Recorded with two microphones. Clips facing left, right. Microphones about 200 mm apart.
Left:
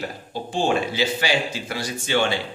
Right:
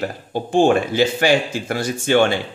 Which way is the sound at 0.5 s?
55° right (ahead or behind).